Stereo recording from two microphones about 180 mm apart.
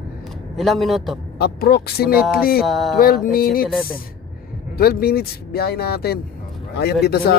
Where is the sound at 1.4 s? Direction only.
60° left (ahead or behind).